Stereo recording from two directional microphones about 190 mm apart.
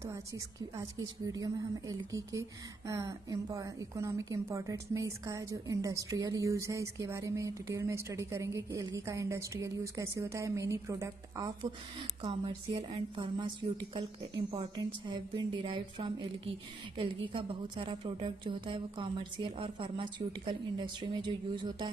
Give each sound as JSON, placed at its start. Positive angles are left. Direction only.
{"t": 0.1, "sound": "a woman's voice", "side_deg": -15}